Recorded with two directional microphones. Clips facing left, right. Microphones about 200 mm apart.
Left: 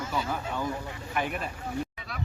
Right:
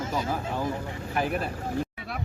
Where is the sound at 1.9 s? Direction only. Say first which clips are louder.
Right 5 dB; 55° right (ahead or behind).